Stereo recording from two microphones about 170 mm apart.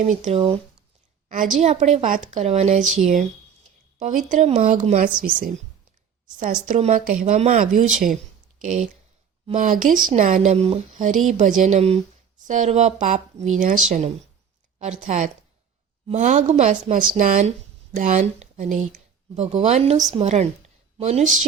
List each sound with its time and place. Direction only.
0.0 s speech: 45° right (ahead or behind)
1.3 s a woman's voice: 50° right (ahead or behind)
6.4 s a woman's voice: 50° right (ahead or behind)
10.5 s speech: 35° right (ahead or behind)
11.0 s a woman's voice: 45° right (ahead or behind)
14.8 s a woman's voice: 50° right (ahead or behind)